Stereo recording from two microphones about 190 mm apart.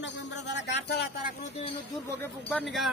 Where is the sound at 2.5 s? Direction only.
5° left (ahead or behind).